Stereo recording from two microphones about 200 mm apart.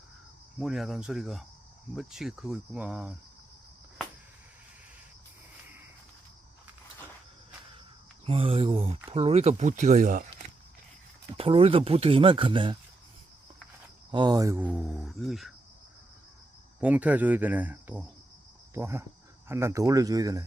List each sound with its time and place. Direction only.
0.6 s speech: centre (ahead or behind)
8.2 s speech: 30° right (ahead or behind)
11.3 s speech: 30° right (ahead or behind)
14.1 s speech: 20° right (ahead or behind); by 15.5 s centre (ahead or behind)
16.8 s speech: 5° right (ahead or behind)